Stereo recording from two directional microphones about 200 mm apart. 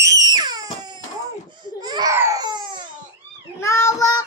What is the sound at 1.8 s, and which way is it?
Baby cry, 20° right (ahead or behind).